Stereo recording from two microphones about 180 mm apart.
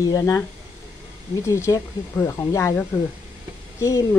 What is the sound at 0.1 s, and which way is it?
Speech, 20° left (ahead or behind).